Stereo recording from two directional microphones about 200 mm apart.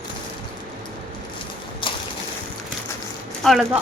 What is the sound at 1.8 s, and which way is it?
Boat, 25° left (ahead or behind).